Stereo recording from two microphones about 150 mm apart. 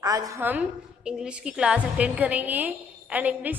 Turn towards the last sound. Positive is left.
turn(degrees=-10)  # may be behind; listen again after turning